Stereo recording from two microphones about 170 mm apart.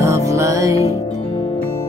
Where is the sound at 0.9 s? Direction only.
30° left (ahead or behind).